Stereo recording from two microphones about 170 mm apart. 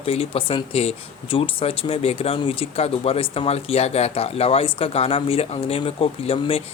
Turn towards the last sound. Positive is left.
turn(degrees=35)  # may be behind; listen again after turning